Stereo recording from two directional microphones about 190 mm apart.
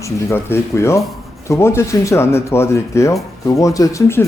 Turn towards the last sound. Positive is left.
turn(degrees=15)  # may be behind; listen again after turning